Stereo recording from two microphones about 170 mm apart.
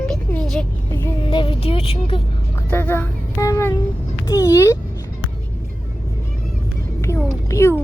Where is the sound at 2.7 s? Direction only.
10° left (ahead or behind).